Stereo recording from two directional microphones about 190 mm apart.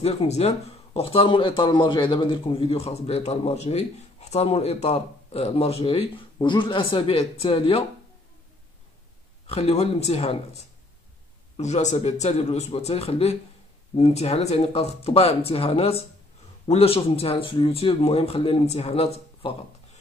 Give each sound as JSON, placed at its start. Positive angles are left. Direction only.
{"t": 0.0, "sound": "speech", "side_deg": 30}
{"t": 9.5, "sound": "speech", "side_deg": 35}
{"t": 11.5, "sound": "speech", "side_deg": 35}